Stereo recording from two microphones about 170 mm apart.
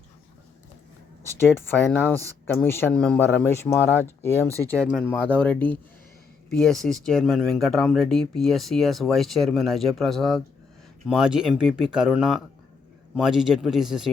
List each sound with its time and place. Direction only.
1.4 s speech: 15° left (ahead or behind)
4.4 s speech: 20° right (ahead or behind)
4.6 s speech: 10° left (ahead or behind)